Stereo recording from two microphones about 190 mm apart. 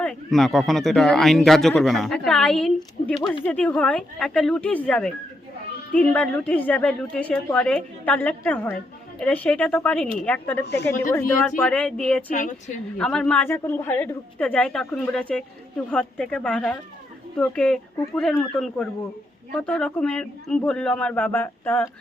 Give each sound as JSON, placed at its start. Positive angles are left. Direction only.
{"t": 0.0, "sound": "a woman's voice", "side_deg": 5}
{"t": 12.3, "sound": "a woman's voice", "side_deg": 45}
{"t": 13.0, "sound": "a woman's voice", "side_deg": 5}